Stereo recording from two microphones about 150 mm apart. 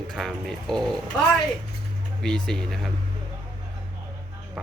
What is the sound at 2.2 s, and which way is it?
Speech, 5° left (ahead or behind).